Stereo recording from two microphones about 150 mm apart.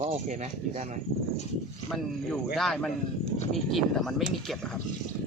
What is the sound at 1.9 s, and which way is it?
Speech, centre (ahead or behind).